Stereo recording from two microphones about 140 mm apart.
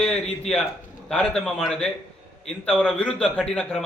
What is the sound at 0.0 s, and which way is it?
A man's voice, 5° left (ahead or behind).